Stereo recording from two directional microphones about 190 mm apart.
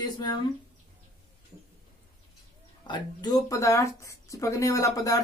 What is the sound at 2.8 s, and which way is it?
Speech, 20° left (ahead or behind).